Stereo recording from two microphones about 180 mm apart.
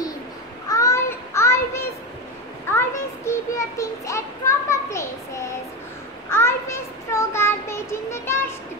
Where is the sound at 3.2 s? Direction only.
15° left (ahead or behind).